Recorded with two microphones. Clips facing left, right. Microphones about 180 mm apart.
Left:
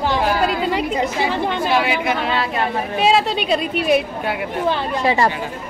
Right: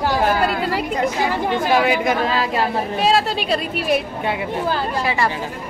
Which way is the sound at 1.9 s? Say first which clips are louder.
Right 2 dB; 40° right (ahead or behind).